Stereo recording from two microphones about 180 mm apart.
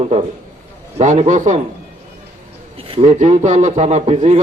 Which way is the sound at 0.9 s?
40° right (ahead or behind).